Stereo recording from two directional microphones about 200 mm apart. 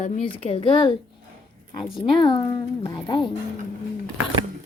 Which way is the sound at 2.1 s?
25° left (ahead or behind).